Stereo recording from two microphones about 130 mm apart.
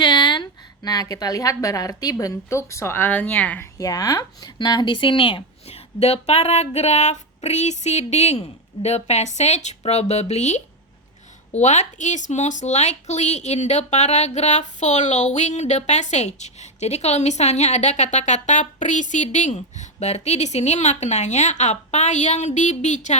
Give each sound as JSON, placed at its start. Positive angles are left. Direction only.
{"t": 0.0, "sound": "a sound", "side_deg": 40}
{"t": 0.8, "sound": "a woman's voice", "side_deg": 30}
{"t": 3.8, "sound": "speech", "side_deg": 30}